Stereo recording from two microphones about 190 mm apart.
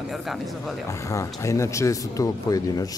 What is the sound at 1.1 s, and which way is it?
Speech, 15° left (ahead or behind).